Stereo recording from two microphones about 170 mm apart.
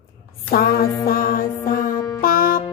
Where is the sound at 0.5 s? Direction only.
65° left (ahead or behind).